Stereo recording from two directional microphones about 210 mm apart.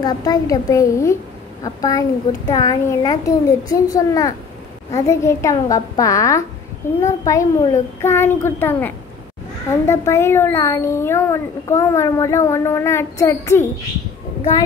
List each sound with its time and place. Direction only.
0.0 s a child's voice: 20° left (ahead or behind)